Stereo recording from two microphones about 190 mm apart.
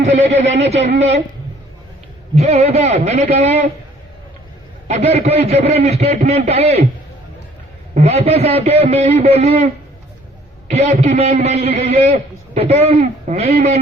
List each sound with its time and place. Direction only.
0.3 s a man's voice: 70° right (ahead or behind)
0.6 s a man's voice: 35° right (ahead or behind)
2.3 s a man's voice: 35° right (ahead or behind)
4.9 s a man's voice: 35° right (ahead or behind)
7.9 s a man's voice: 35° right (ahead or behind)
10.7 s a man's voice: 35° right (ahead or behind)